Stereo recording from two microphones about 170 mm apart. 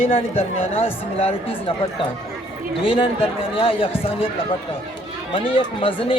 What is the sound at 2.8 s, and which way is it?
Speech, 30° left (ahead or behind).